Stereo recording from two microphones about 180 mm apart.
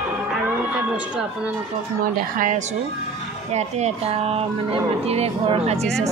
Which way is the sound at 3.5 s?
40° right (ahead or behind).